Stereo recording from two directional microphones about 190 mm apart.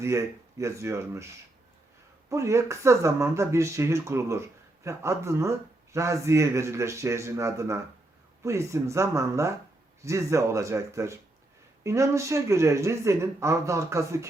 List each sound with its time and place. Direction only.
0.0 s speech: 15° right (ahead or behind)
2.3 s speech: 15° right (ahead or behind)